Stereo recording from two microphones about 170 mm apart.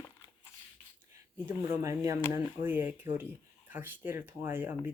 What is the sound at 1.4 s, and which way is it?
Speech, 15° right (ahead or behind).